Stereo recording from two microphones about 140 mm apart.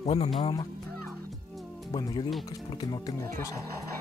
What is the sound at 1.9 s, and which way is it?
Speech, 30° left (ahead or behind).